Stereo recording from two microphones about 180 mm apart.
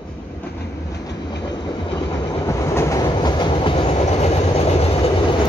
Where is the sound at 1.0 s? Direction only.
25° left (ahead or behind).